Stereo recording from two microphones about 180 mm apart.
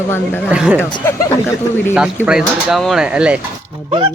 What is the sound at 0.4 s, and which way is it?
Speech, 5° right (ahead or behind).